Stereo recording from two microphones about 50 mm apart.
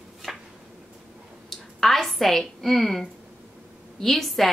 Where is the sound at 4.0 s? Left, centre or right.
Centre.